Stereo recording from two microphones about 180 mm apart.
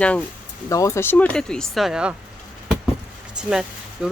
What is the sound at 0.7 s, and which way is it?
Speech, 15° left (ahead or behind).